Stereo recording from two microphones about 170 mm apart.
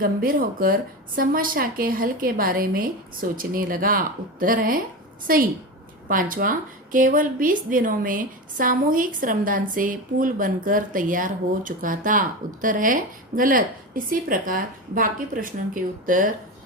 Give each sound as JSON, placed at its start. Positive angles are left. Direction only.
{"t": 0.0, "sound": "speech", "side_deg": -55}